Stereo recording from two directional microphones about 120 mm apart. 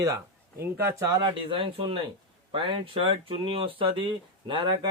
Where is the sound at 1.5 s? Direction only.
45° right (ahead or behind).